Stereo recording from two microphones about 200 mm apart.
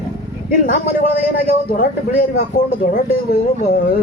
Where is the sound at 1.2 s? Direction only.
45° left (ahead or behind).